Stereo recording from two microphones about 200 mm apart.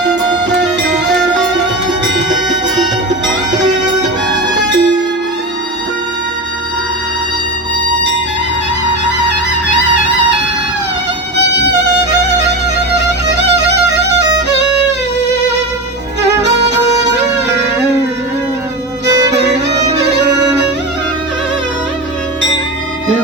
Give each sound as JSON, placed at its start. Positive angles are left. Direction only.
{"t": 0.5, "sound": "music", "side_deg": -60}
{"t": 11.5, "sound": "violin", "side_deg": -60}
{"t": 13.3, "sound": "music", "side_deg": -60}
{"t": 16.6, "sound": "music", "side_deg": -60}
{"t": 19.4, "sound": "violin", "side_deg": -60}